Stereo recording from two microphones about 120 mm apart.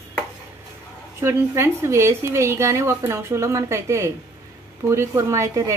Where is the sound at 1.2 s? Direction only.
25° right (ahead or behind).